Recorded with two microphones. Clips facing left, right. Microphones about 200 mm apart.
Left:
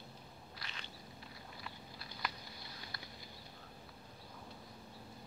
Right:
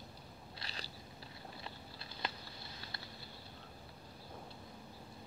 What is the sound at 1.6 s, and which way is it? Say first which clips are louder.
Patter: right 1 dB; 25° right (ahead or behind).